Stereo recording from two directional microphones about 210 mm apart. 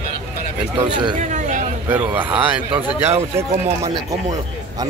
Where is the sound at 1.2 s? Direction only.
35° right (ahead or behind).